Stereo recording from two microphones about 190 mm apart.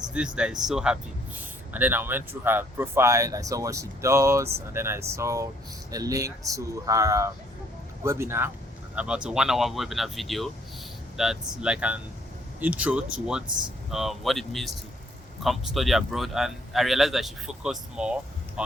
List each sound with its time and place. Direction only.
0.3 s speech: 5° right (ahead or behind)